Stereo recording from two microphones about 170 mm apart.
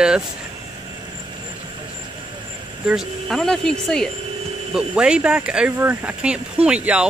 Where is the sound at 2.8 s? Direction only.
Centre (ahead or behind).